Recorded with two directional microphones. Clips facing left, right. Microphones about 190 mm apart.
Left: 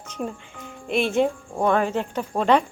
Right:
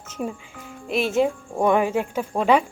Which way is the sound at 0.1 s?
5° right (ahead or behind).